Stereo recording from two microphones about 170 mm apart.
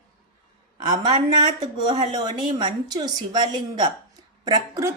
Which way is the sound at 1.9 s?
25° right (ahead or behind).